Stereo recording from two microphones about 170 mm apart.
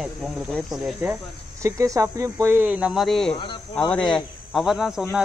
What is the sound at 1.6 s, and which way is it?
Speech, 20° right (ahead or behind).